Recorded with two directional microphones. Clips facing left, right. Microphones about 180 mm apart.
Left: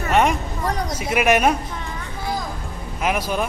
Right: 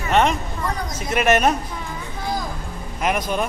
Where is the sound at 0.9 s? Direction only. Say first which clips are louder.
Even; 10° left (ahead or behind).